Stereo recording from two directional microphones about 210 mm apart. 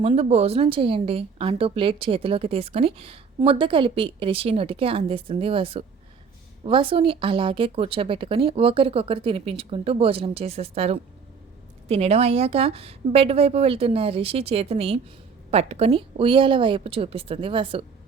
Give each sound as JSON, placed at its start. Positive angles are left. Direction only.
{"t": 0.0, "sound": "a woman's voice", "side_deg": -30}